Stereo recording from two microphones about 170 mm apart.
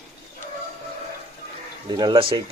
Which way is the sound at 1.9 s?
25° right (ahead or behind).